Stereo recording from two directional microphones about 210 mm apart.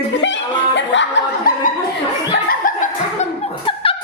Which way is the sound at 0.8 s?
60° left (ahead or behind).